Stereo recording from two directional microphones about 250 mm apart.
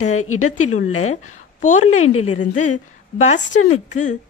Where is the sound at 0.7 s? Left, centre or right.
Left.